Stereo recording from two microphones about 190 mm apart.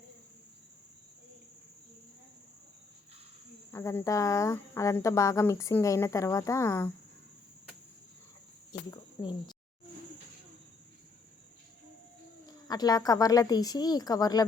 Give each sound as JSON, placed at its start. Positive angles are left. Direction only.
{"t": 3.7, "sound": "speech", "side_deg": 15}
{"t": 8.9, "sound": "a sound", "side_deg": 20}
{"t": 12.5, "sound": "a woman's voice", "side_deg": 20}